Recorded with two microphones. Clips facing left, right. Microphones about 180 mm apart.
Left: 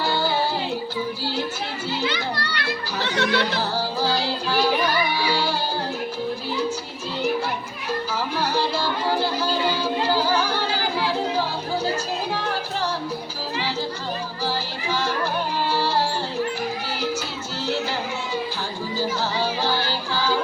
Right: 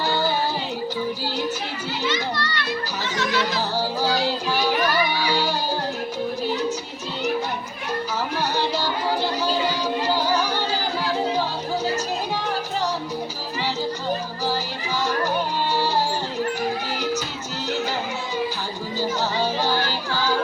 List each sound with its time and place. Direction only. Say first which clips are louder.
2.0 s children playing: right 2 dB; 70° left (ahead or behind)